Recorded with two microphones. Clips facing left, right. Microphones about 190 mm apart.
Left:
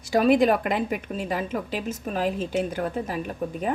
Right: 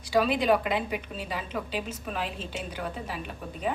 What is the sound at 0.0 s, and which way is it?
A woman's voice, 50° left (ahead or behind).